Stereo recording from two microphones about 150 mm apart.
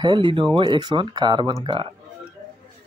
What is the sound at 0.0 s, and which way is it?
Speech, 30° right (ahead or behind).